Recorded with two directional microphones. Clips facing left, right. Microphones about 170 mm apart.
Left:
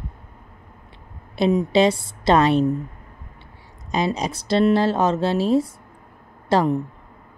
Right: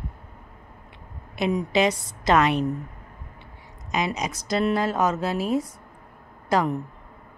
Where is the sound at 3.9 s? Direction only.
30° left (ahead or behind).